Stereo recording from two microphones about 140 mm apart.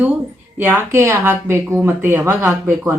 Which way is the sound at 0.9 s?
20° right (ahead or behind).